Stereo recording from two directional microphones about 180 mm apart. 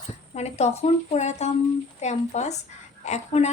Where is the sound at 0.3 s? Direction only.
35° left (ahead or behind).